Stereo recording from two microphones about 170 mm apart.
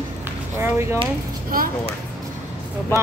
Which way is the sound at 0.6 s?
15° right (ahead or behind).